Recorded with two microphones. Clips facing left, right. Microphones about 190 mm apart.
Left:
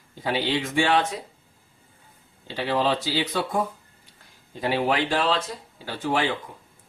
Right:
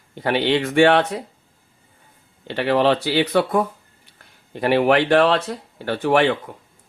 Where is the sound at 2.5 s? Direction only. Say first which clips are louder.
Right 6 dB; 65° right (ahead or behind).